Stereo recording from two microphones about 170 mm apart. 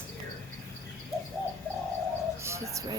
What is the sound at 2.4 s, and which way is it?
Speech, 15° right (ahead or behind).